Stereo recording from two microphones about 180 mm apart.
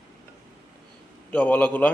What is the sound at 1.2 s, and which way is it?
Speech, 10° left (ahead or behind).